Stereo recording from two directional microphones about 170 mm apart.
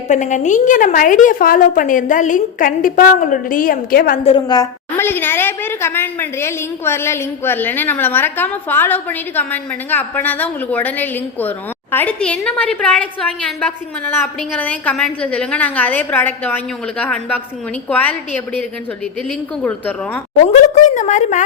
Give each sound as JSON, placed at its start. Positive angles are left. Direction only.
{"t": 0.1, "sound": "a woman's voice", "side_deg": 45}
{"t": 4.2, "sound": "a woman's voice", "side_deg": 30}
{"t": 19.6, "sound": "a woman's voice", "side_deg": 10}
{"t": 20.8, "sound": "a woman's voice", "side_deg": 45}